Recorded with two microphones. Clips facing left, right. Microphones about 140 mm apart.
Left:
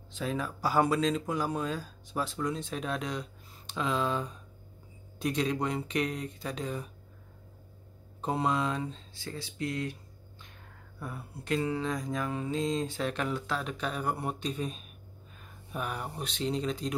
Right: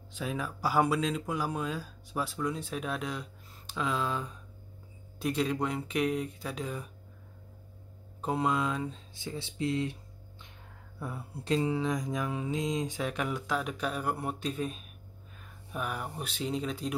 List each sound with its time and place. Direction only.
0.1 s speech: 10° right (ahead or behind)
8.2 s speech: 5° right (ahead or behind)
9.1 s speech: 20° right (ahead or behind)
11.0 s speech: 20° right (ahead or behind)